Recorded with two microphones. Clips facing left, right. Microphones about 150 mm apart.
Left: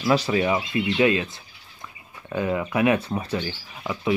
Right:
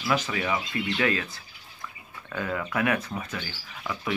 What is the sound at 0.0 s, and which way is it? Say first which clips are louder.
Speech: left 7 dB; 30° left (ahead or behind).